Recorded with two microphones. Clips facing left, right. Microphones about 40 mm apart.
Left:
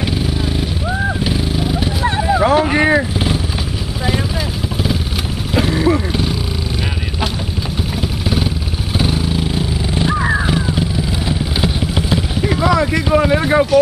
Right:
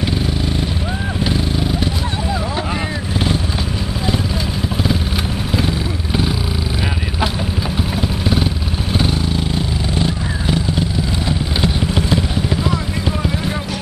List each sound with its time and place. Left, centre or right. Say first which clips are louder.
0.0 s vehicle: left 1 dB; centre
2.0 s a sound: left 6 dB; left
2.7 s vehicle: left 10 dB; left
5.5 s vehicle: left 4 dB; centre
8.9 s vehicle: left 1 dB; centre
12.6 s vehicle: left 7 dB; left
13.1 s boat: left 12 dB; left